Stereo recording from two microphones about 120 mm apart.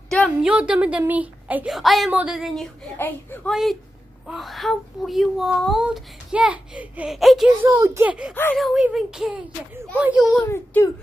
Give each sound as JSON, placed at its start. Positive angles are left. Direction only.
{"t": 0.4, "sound": "a woman's voice", "side_deg": -10}
{"t": 1.7, "sound": "speech", "side_deg": 0}
{"t": 7.6, "sound": "a child's voice", "side_deg": -25}
{"t": 8.1, "sound": "a woman's voice", "side_deg": -5}
{"t": 10.4, "sound": "a child's voice", "side_deg": 20}